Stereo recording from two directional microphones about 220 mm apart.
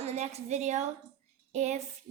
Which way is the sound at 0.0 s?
30° right (ahead or behind).